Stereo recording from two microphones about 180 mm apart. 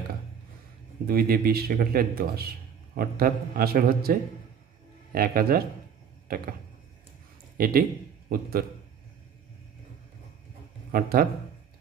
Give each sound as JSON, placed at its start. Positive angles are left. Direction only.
{"t": 1.0, "sound": "a man's voice", "side_deg": -55}
{"t": 6.2, "sound": "a sound", "side_deg": -55}
{"t": 7.5, "sound": "a man's voice", "side_deg": -55}
{"t": 10.9, "sound": "a man's voice", "side_deg": -55}